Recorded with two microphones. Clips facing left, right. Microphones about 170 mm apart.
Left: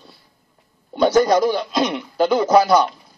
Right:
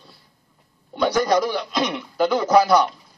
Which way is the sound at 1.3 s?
25° left (ahead or behind).